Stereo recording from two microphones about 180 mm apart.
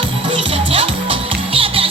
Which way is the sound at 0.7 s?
30° right (ahead or behind).